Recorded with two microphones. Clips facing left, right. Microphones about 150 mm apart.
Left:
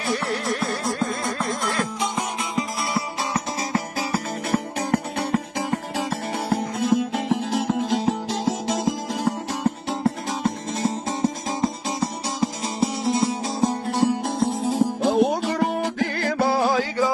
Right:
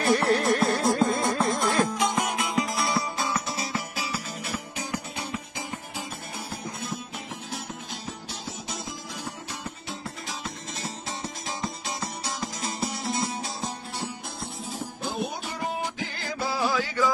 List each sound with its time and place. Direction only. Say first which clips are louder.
0.1 s music: right 3 dB; 50° right (ahead or behind)
0.8 s music: right 2 dB; 20° right (ahead or behind)
2.5 s music: left 2 dB; centre (ahead or behind)
3.7 s music: left 7 dB; 50° left (ahead or behind); by 13.3 s 30° left (ahead or behind)
13.9 s music: left 14 dB; 90° left; by 17.1 s 35° left (ahead or behind)